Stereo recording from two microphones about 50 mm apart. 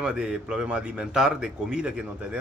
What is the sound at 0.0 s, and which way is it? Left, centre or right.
Speech, centre.